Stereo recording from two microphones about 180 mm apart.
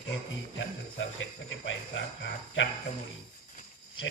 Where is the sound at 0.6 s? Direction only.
90° left.